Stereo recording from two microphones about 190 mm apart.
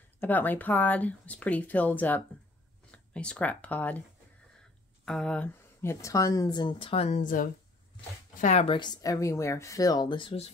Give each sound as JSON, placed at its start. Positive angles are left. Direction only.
{"t": 0.2, "sound": "speech", "side_deg": 10}
{"t": 5.0, "sound": "a woman's voice", "side_deg": 5}